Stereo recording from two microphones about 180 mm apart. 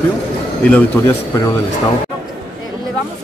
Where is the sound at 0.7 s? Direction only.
10° left (ahead or behind).